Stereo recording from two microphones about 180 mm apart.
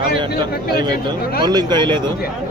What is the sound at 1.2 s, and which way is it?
Speech, 55° left (ahead or behind).